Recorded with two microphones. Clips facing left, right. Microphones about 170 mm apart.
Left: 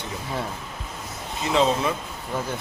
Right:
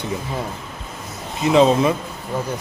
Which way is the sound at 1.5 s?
15° right (ahead or behind).